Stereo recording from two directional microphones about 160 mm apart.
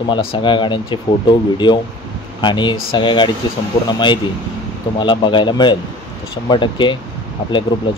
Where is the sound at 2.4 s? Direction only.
30° left (ahead or behind).